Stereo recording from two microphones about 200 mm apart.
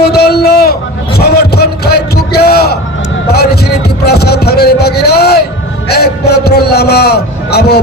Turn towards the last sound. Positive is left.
turn(degrees=55)  # may be behind; listen again after turning